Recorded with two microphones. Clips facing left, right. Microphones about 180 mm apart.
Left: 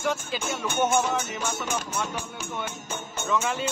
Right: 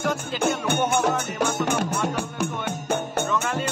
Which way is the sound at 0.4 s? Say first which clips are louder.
Right 7 dB; 60° right (ahead or behind).